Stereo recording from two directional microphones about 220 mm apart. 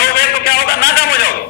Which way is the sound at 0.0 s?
45° left (ahead or behind).